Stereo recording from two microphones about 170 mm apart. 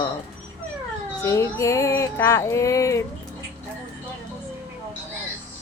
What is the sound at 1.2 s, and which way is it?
Female singing, 15° left (ahead or behind).